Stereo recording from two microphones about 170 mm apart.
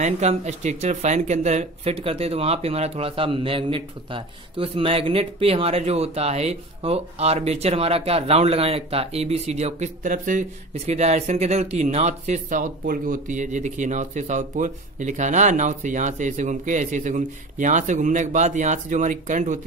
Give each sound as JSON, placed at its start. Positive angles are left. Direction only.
{"t": 0.0, "sound": "speech", "side_deg": -40}